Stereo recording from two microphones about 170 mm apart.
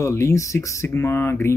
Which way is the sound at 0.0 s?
15° left (ahead or behind).